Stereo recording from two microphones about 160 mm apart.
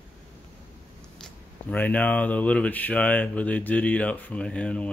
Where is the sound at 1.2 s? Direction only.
10° left (ahead or behind).